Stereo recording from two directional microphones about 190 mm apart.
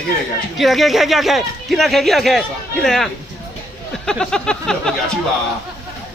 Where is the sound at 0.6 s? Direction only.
Centre (ahead or behind).